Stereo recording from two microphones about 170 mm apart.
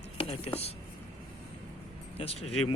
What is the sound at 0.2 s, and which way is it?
Speech, 35° left (ahead or behind).